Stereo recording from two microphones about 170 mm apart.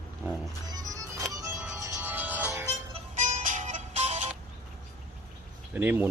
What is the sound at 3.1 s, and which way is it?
Music, 50° right (ahead or behind).